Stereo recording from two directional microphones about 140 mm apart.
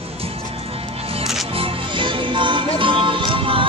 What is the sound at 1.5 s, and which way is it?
Music, 35° right (ahead or behind).